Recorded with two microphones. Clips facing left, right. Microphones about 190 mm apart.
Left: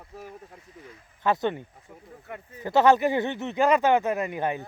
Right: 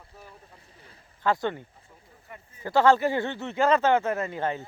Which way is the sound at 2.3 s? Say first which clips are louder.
Left 7 dB; 65° left (ahead or behind).